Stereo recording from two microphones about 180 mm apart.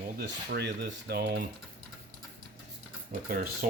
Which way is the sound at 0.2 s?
65° right (ahead or behind).